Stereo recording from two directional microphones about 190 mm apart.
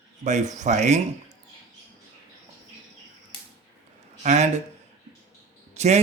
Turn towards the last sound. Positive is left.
turn(degrees=-35)  # may be behind; listen again after turning